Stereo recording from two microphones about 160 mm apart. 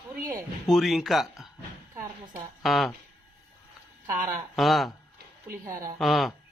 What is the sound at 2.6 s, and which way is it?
Speech, centre (ahead or behind).